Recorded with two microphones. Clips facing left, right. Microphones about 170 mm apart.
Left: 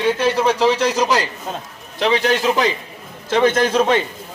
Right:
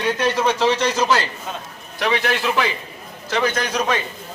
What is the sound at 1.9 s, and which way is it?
Speech, 30° left (ahead or behind).